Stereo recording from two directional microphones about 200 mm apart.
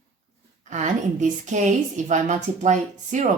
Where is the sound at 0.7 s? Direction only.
35° right (ahead or behind).